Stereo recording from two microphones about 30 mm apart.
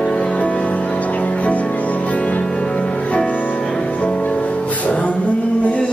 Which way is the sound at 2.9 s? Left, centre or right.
Left.